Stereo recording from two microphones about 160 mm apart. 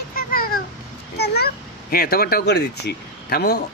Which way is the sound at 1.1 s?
90° left.